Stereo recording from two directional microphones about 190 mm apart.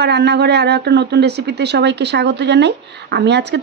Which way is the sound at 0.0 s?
60° right (ahead or behind).